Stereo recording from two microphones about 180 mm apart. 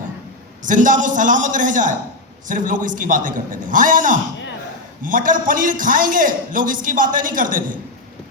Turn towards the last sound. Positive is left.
turn(degrees=-50)  # may be behind; listen again after turning